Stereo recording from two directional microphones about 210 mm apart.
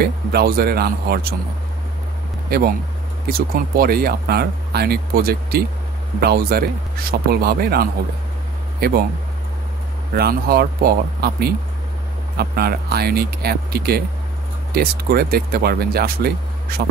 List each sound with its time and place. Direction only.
0.0 s speech: 50° right (ahead or behind)
2.5 s speech: 45° right (ahead or behind)
10.1 s speech: 45° right (ahead or behind)